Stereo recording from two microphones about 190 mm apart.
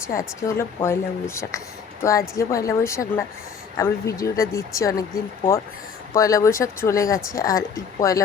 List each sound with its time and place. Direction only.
0.1 s speech: 15° left (ahead or behind)
6.1 s speech: 15° left (ahead or behind)